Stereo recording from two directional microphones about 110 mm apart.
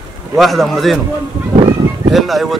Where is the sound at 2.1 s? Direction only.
Centre (ahead or behind).